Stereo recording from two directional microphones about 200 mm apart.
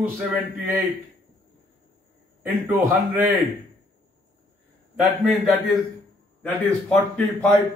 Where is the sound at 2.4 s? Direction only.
10° right (ahead or behind).